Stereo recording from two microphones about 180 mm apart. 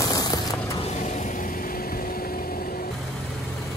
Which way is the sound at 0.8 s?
40° left (ahead or behind).